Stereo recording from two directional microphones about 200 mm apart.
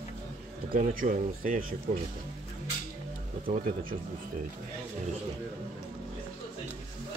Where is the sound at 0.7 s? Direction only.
40° right (ahead or behind).